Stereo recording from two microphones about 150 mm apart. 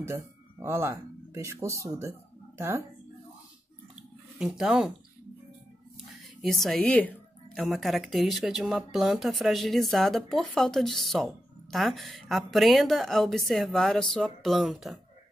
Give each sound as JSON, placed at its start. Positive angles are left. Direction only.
{"t": 0.0, "sound": "speech", "side_deg": -15}
{"t": 4.4, "sound": "speech", "side_deg": -5}
{"t": 6.4, "sound": "a woman's voice", "side_deg": 0}